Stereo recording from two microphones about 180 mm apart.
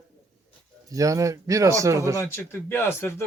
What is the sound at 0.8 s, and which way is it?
A man's voice, 20° right (ahead or behind).